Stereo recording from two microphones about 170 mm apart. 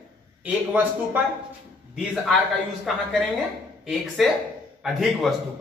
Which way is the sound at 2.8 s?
Centre (ahead or behind).